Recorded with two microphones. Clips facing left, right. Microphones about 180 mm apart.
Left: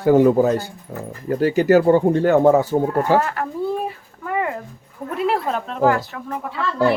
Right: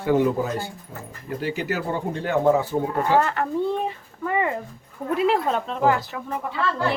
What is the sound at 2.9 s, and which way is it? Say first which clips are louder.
Speech: left 3 dB; 5° left (ahead or behind).